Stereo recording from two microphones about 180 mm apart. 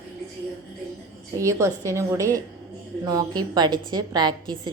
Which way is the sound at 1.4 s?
15° right (ahead or behind).